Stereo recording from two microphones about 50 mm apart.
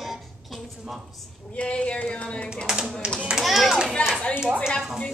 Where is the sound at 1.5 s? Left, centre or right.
Left.